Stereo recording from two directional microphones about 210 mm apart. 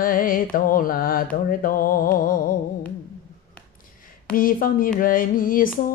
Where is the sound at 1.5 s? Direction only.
40° left (ahead or behind).